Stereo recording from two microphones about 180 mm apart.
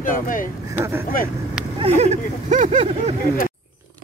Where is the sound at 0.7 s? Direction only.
15° right (ahead or behind).